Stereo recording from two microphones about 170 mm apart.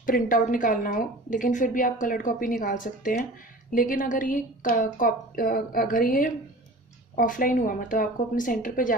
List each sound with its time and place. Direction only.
0.0 s a woman's voice: 55° left (ahead or behind)